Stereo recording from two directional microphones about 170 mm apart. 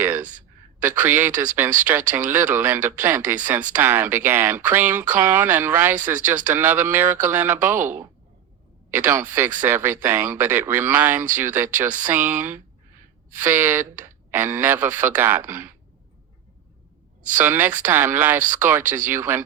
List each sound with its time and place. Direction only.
0.2 s a sound: 50° right (ahead or behind)
0.8 s speech: 10° right (ahead or behind)
9.0 s speech: 15° right (ahead or behind)
17.3 s speech: 10° right (ahead or behind)